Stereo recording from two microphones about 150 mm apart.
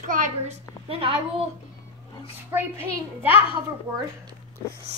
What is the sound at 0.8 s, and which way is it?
Speech, 40° right (ahead or behind).